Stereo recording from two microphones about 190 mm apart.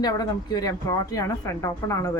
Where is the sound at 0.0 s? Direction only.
20° left (ahead or behind).